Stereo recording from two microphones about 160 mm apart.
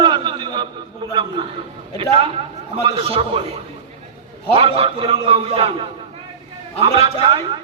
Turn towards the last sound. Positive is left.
turn(degrees=-35)  # may be behind; listen again after turning